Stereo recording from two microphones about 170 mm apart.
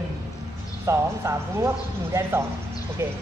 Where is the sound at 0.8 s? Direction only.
15° right (ahead or behind).